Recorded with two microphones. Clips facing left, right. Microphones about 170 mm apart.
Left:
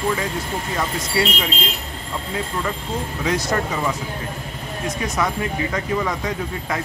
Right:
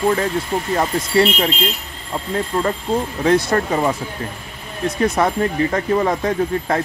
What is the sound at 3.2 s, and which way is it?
Speech, 50° right (ahead or behind).